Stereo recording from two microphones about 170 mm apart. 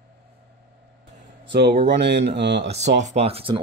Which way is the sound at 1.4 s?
80° right.